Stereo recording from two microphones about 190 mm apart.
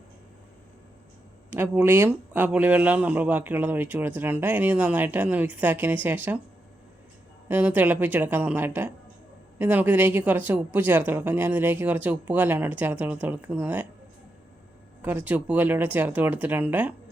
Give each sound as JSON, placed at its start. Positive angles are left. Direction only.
{"t": 1.5, "sound": "speech", "side_deg": -10}
{"t": 7.4, "sound": "speech", "side_deg": -10}
{"t": 15.0, "sound": "speech", "side_deg": -10}